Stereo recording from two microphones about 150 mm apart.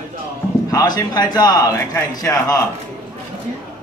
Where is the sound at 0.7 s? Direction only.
25° left (ahead or behind).